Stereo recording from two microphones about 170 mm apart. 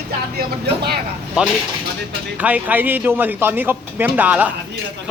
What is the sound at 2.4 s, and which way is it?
Speech, 10° right (ahead or behind).